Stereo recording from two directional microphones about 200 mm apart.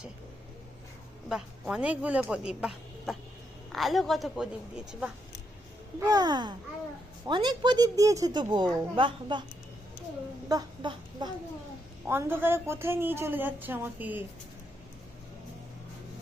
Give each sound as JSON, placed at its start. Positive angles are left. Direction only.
{"t": 1.3, "sound": "speech", "side_deg": -5}
{"t": 6.0, "sound": "speech", "side_deg": -20}
{"t": 10.5, "sound": "a sound", "side_deg": -20}
{"t": 12.0, "sound": "a woman's voice", "side_deg": -10}